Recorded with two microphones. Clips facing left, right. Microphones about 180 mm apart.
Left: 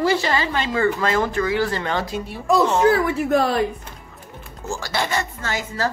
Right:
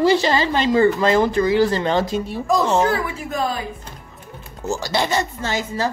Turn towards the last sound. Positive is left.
turn(degrees=-25)  # may be behind; listen again after turning